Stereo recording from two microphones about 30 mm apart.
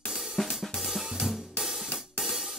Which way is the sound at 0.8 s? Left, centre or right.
Centre.